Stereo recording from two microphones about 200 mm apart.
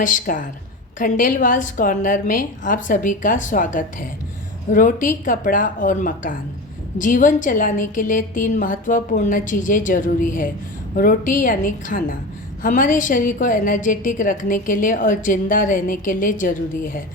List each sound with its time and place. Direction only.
0.0 s a woman's voice: 40° left (ahead or behind)